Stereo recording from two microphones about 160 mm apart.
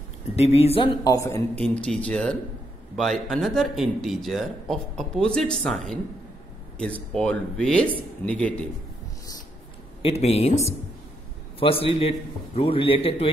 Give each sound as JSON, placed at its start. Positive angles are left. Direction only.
{"t": 0.4, "sound": "a man's voice", "side_deg": 40}
{"t": 1.0, "sound": "a man's voice", "side_deg": 20}
{"t": 1.6, "sound": "speech", "side_deg": 5}
{"t": 10.0, "sound": "a man's voice", "side_deg": 40}
{"t": 11.8, "sound": "a man's voice", "side_deg": 35}